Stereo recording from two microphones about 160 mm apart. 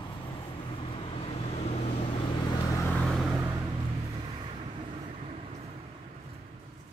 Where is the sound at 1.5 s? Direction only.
40° left (ahead or behind).